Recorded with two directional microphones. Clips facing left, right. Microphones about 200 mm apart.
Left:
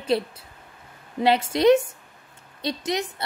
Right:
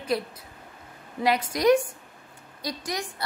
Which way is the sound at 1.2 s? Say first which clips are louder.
Left 4 dB; 25° left (ahead or behind).